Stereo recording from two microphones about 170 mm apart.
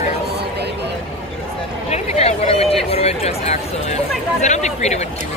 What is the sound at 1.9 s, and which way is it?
Speech, 35° left (ahead or behind).